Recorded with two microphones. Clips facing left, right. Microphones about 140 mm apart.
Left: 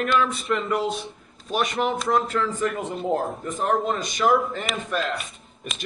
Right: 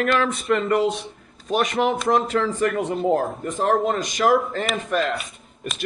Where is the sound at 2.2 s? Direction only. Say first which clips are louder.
Right 3 dB; 90° right.